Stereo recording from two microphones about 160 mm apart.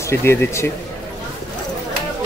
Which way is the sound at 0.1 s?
15° left (ahead or behind).